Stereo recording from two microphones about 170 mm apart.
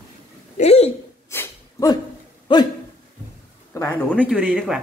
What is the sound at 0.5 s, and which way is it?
Speech, 40° left (ahead or behind).